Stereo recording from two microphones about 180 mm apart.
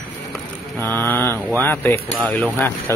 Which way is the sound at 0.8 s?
10° left (ahead or behind).